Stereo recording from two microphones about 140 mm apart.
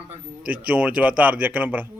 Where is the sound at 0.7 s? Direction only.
10° right (ahead or behind).